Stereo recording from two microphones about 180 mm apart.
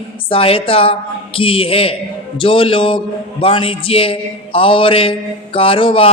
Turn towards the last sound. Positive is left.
turn(degrees=30)  # may be behind; listen again after turning